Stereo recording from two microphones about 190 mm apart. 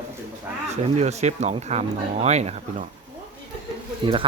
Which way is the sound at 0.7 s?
35° right (ahead or behind).